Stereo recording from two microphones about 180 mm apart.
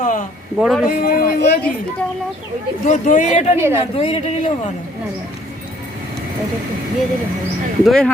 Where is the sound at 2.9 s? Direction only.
45° left (ahead or behind).